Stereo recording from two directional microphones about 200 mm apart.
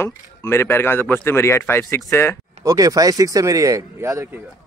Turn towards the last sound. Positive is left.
turn(degrees=-15)  # may be behind; listen again after turning